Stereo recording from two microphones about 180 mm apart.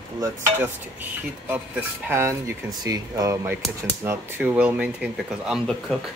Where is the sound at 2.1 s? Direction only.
15° right (ahead or behind).